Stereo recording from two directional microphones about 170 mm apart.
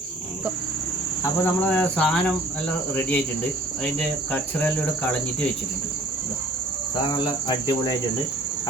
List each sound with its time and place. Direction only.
1.2 s cricket: 10° left (ahead or behind)
7.0 s cricket: 25° left (ahead or behind)